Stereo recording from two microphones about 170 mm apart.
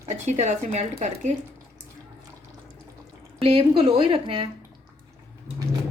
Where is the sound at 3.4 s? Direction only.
35° right (ahead or behind).